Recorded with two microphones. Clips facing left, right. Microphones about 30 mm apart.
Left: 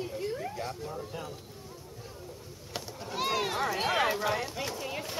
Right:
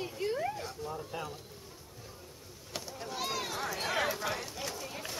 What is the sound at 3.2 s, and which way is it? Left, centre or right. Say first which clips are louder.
Speech: left 7 dB; left.